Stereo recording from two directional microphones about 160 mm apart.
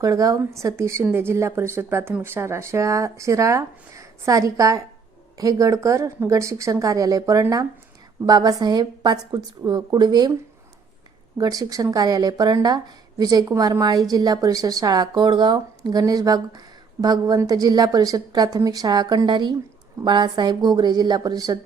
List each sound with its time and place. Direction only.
0.0 s speech: 20° right (ahead or behind)
11.3 s speech: 20° right (ahead or behind)